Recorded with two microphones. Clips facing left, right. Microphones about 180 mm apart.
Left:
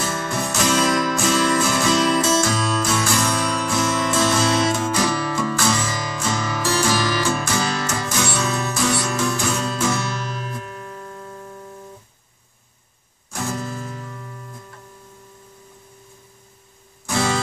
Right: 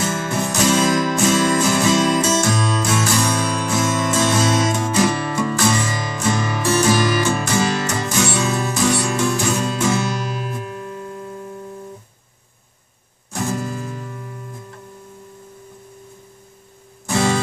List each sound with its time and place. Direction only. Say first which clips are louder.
0.1 s music: right 2 dB; 20° right (ahead or behind)
3.7 s music: right 2 dB; 5° right (ahead or behind)
4.5 s music: right 1 dB; 25° right (ahead or behind)
13.3 s music: right 3 dB; 15° right (ahead or behind)